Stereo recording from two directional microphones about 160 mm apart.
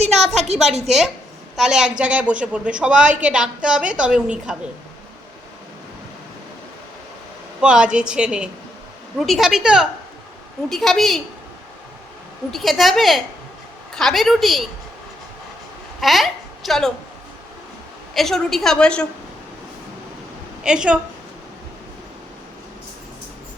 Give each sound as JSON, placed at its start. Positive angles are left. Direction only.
{"t": 0.0, "sound": "a sound", "side_deg": -45}
{"t": 1.5, "sound": "a woman's voice", "side_deg": -5}
{"t": 7.6, "sound": "a woman's voice", "side_deg": -5}
{"t": 12.5, "sound": "a woman's voice", "side_deg": 0}
{"t": 16.0, "sound": "a woman's voice", "side_deg": 0}
{"t": 18.1, "sound": "a woman's voice", "side_deg": 0}
{"t": 20.7, "sound": "a woman's voice", "side_deg": -5}